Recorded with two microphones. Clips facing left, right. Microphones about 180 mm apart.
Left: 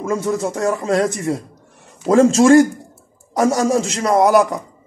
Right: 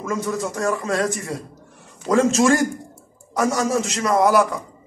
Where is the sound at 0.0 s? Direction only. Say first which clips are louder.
Left 5 dB; 30° left (ahead or behind).